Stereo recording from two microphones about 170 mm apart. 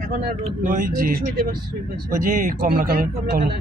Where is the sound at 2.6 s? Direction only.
60° right (ahead or behind).